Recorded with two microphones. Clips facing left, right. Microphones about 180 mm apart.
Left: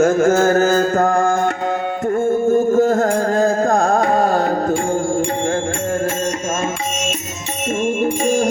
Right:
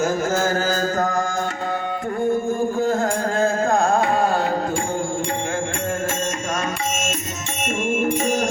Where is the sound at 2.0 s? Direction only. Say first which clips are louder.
Left 5 dB; 45° left (ahead or behind); by 6.7 s 25° left (ahead or behind).